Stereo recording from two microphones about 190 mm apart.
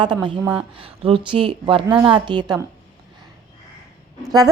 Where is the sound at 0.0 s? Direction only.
25° right (ahead or behind).